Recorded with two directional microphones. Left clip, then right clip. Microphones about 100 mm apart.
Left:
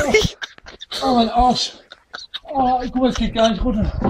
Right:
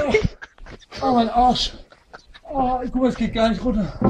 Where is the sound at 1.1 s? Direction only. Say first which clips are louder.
Left 1 dB; 25° left (ahead or behind).